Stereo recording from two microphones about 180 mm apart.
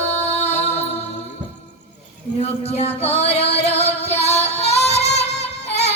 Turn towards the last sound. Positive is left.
turn(degrees=35)  # may be behind; listen again after turning